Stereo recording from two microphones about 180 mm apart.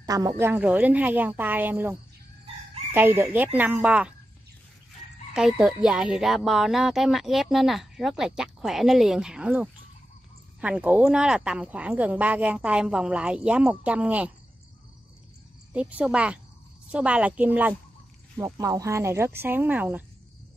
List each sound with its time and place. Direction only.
0.0 s a woman's voice: 20° right (ahead or behind)
5.3 s speech: 5° right (ahead or behind)
15.7 s speech: 5° right (ahead or behind)